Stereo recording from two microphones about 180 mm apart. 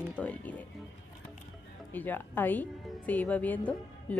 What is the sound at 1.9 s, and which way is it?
Speech, 10° left (ahead or behind).